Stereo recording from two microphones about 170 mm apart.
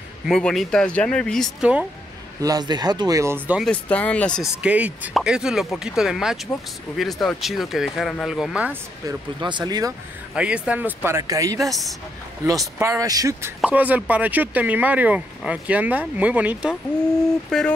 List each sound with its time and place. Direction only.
0.3 s speech: centre (ahead or behind)
2.4 s speech: 25° right (ahead or behind)
3.4 s speech: 5° right (ahead or behind)
3.7 s speech: 5° left (ahead or behind)
4.6 s speech: 10° right (ahead or behind)
9.0 s speech: 25° right (ahead or behind)
10.3 s speech: 5° right (ahead or behind)
11.6 s speech: centre (ahead or behind)
12.4 s speech: 20° right (ahead or behind)
13.6 s speech: 10° right (ahead or behind)
17.5 s speech: 5° left (ahead or behind)